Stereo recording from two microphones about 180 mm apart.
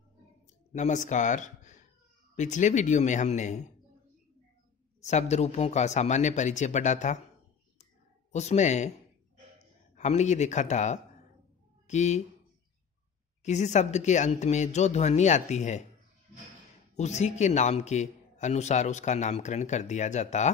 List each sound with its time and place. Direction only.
0.7 s a man's voice: 40° left (ahead or behind)
5.0 s a man's voice: 40° left (ahead or behind)
8.3 s a man's voice: 40° left (ahead or behind)
9.9 s a man's voice: 40° left (ahead or behind)
13.4 s a man's voice: 40° left (ahead or behind)
16.9 s a man's voice: 40° left (ahead or behind)